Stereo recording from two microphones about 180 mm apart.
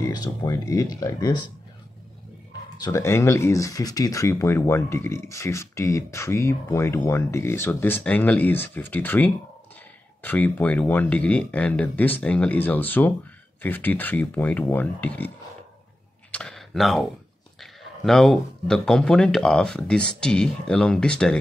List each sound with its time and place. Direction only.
0.0 s speech: 20° left (ahead or behind)
2.8 s speech: 15° left (ahead or behind)
16.3 s a sound: 5° left (ahead or behind)
17.6 s speech: centre (ahead or behind)